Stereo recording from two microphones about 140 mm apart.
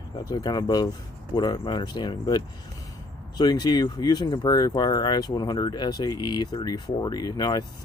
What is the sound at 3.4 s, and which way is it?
Speech, 30° left (ahead or behind).